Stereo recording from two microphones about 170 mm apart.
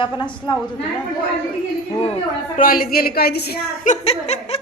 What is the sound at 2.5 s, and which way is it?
A woman's voice, 55° left (ahead or behind).